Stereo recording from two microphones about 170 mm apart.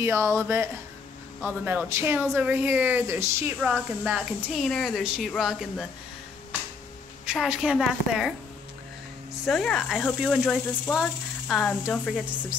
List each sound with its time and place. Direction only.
0.0 s a woman's voice: 15° right (ahead or behind)
7.2 s speech: 5° right (ahead or behind)
9.5 s speech: centre (ahead or behind)